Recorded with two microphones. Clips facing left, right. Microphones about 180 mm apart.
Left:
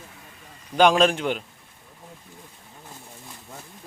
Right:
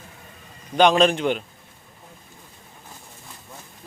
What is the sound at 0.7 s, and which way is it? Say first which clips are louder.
Speech: right 1 dB; 5° left (ahead or behind).